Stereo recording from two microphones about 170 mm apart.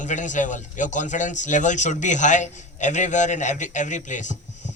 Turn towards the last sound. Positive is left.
turn(degrees=45)  # may be behind; listen again after turning